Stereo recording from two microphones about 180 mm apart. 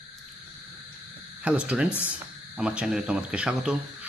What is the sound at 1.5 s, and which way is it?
Speech, 5° right (ahead or behind).